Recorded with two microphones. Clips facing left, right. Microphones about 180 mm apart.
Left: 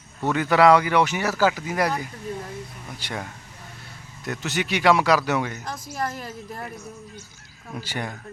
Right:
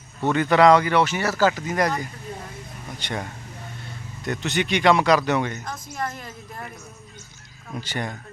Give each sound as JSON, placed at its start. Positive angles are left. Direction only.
{"t": 0.2, "sound": "speech", "side_deg": 5}
{"t": 4.3, "sound": "speech", "side_deg": 5}
{"t": 6.0, "sound": "a woman's voice", "side_deg": 35}
{"t": 7.7, "sound": "speech", "side_deg": 10}